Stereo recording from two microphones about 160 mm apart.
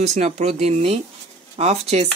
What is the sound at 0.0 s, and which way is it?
Speech, 45° right (ahead or behind).